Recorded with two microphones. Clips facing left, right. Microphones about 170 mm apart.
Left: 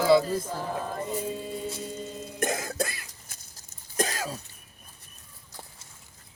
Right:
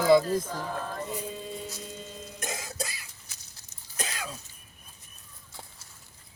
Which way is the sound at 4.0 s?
40° left (ahead or behind).